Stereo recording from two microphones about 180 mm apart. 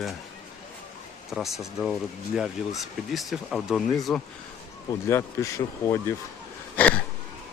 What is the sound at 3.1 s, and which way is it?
Speech, centre (ahead or behind).